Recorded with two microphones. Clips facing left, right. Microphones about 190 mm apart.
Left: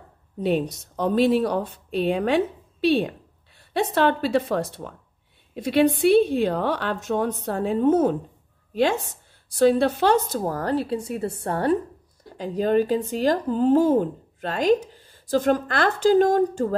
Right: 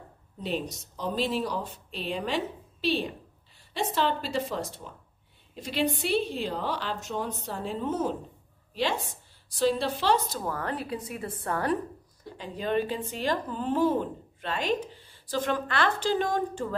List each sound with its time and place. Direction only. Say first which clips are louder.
0.4 s a woman's voice: left 9 dB; 60° left (ahead or behind); by 11.8 s 30° left (ahead or behind)
12.4 s speech: left 8 dB; 40° left (ahead or behind)